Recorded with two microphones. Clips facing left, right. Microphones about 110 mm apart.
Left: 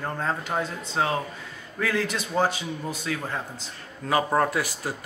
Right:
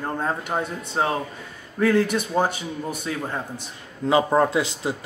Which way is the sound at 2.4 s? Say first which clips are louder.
Right 1 dB; 50° right (ahead or behind).